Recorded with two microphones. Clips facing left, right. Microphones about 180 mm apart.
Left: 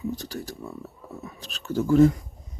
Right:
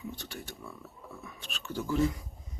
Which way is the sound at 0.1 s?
40° left (ahead or behind).